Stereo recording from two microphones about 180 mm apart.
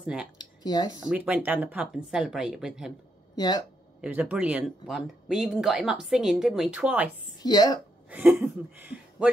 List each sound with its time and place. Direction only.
0.0 s speech: 5° right (ahead or behind)
0.4 s a sound: 25° left (ahead or behind)
1.0 s speech: 5° right (ahead or behind)
3.3 s a woman's voice: 25° left (ahead or behind)
4.0 s speech: 5° right (ahead or behind)
7.4 s a woman's voice: 20° left (ahead or behind)
8.1 s speech: 5° right (ahead or behind)